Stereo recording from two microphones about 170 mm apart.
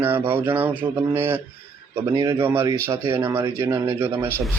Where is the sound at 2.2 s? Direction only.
15° right (ahead or behind).